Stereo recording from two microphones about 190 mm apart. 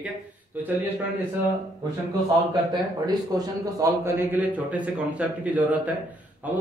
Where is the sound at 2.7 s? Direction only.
20° right (ahead or behind).